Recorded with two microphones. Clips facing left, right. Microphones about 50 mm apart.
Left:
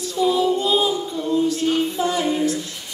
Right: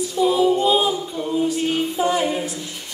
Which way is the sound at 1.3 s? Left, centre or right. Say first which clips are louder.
Left 1 dB; centre.